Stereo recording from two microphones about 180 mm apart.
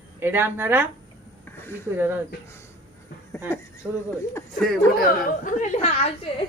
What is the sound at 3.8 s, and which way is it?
Speech, 10° right (ahead or behind).